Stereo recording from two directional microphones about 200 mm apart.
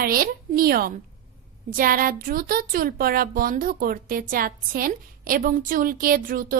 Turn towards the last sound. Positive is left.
turn(degrees=-45)  # may be behind; listen again after turning